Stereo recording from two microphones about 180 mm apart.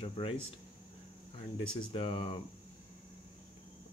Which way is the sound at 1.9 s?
30° left (ahead or behind).